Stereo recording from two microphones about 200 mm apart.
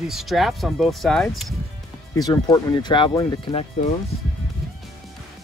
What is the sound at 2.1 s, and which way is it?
Speech, 20° left (ahead or behind).